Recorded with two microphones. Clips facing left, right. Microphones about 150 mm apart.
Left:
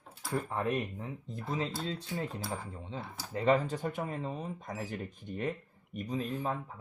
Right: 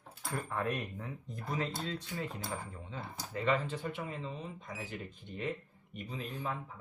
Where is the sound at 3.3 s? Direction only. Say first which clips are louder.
Left 5 dB; 35° left (ahead or behind).